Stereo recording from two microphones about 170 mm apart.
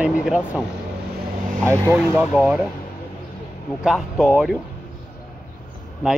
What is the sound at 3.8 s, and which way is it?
Speech, centre (ahead or behind).